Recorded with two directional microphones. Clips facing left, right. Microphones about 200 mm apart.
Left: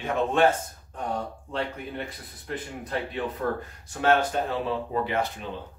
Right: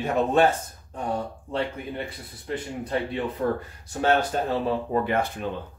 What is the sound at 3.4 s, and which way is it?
Speech, 30° right (ahead or behind).